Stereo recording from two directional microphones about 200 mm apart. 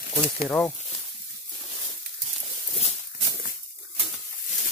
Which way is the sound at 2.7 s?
35° left (ahead or behind).